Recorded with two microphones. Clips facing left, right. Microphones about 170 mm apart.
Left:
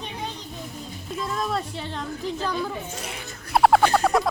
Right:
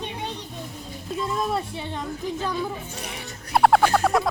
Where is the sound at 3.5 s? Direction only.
Centre (ahead or behind).